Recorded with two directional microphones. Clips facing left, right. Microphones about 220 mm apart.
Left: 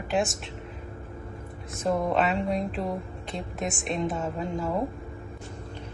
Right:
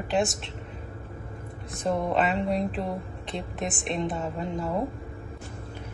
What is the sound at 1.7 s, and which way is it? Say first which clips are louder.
Speech: left 1 dB; centre (ahead or behind).